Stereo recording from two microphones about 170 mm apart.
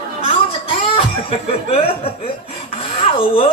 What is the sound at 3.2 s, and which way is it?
Speech, 30° left (ahead or behind).